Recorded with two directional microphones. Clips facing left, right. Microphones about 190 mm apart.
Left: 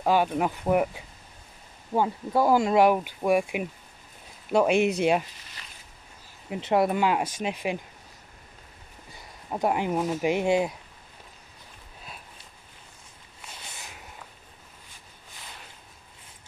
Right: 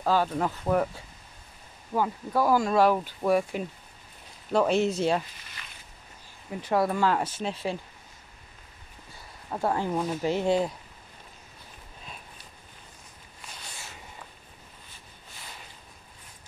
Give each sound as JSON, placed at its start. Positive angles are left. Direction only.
{"t": 0.0, "sound": "speech", "side_deg": 15}
{"t": 6.5, "sound": "speech", "side_deg": 20}
{"t": 9.5, "sound": "speech", "side_deg": 15}